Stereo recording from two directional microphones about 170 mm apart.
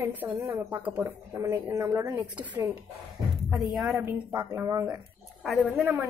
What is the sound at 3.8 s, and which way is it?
Speech, 15° right (ahead or behind).